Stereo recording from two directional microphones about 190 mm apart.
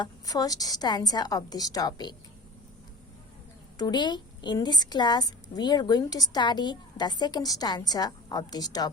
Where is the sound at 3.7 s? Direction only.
20° left (ahead or behind).